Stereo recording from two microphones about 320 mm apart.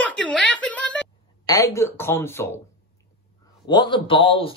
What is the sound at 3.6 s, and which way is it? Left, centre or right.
Speech, centre.